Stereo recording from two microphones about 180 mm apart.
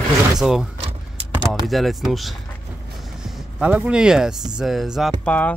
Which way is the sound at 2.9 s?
Centre (ahead or behind).